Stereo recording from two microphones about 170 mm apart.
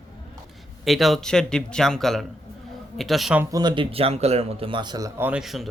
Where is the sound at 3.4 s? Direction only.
20° right (ahead or behind).